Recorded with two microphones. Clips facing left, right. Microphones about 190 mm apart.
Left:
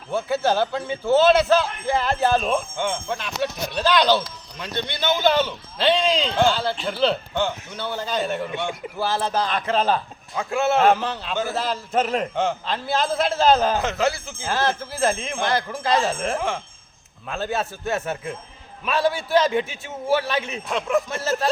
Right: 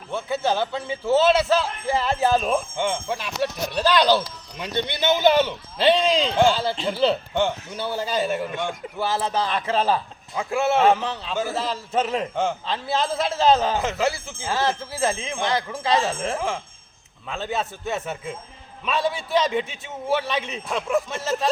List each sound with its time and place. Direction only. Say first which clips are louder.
0.1 s a man's voice: left 2 dB; 5° left (ahead or behind)
10.8 s a man's voice: left 1 dB; centre (ahead or behind)